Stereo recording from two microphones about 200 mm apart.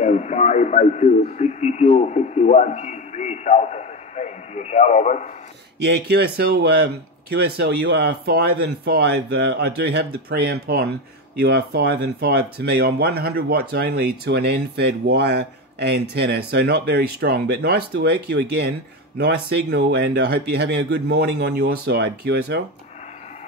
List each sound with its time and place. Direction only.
0.0 s a man's voice: 35° left (ahead or behind)
5.8 s speech: 55° right (ahead or behind)